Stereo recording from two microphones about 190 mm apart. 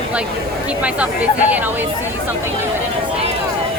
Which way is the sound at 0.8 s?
5° right (ahead or behind).